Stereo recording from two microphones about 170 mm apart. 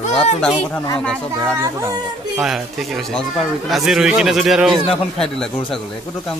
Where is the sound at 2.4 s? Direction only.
Centre (ahead or behind).